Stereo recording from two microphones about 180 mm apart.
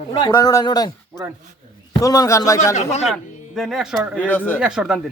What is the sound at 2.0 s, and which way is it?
Speech, 20° left (ahead or behind).